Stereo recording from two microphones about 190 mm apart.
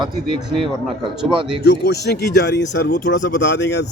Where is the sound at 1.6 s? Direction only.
60° left (ahead or behind).